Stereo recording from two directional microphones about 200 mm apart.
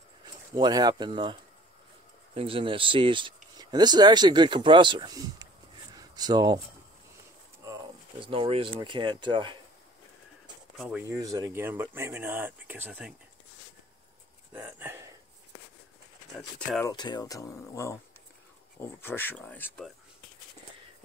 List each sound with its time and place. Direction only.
0.6 s speech: 20° right (ahead or behind)
2.3 s speech: 25° right (ahead or behind)
8.2 s speech: 25° right (ahead or behind)
10.8 s speech: 5° right (ahead or behind)
14.5 s speech: 10° right (ahead or behind)
16.3 s speech: centre (ahead or behind)
16.8 s speech: 20° left (ahead or behind)